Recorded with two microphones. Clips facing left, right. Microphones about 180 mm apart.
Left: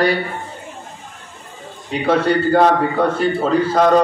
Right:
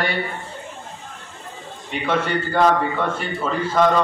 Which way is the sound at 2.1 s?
40° left (ahead or behind).